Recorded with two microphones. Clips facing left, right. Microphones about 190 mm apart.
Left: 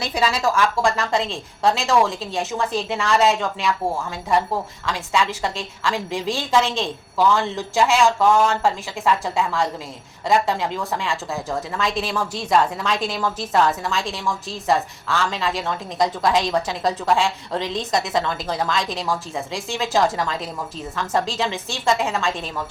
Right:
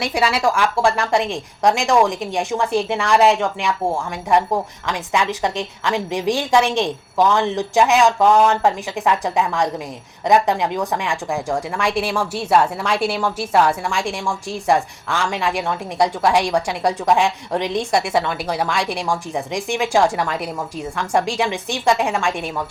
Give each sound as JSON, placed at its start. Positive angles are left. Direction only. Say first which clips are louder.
{"t": 0.0, "sound": "a woman's voice", "louder": "right 3 dB", "side_deg": -10}